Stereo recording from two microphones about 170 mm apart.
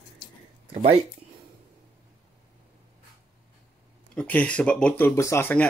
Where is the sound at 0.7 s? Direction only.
35° right (ahead or behind).